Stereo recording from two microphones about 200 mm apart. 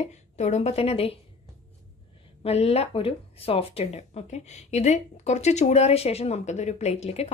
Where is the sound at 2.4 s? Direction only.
30° left (ahead or behind).